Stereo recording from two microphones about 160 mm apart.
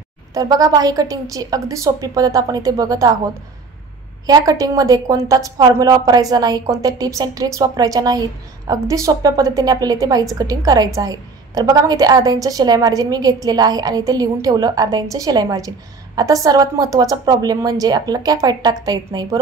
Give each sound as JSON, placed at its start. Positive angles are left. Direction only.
{"t": 0.3, "sound": "a woman's voice", "side_deg": -20}
{"t": 4.3, "sound": "a woman's voice", "side_deg": -20}